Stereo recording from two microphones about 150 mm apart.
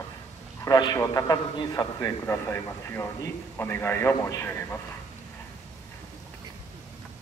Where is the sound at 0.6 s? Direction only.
25° left (ahead or behind).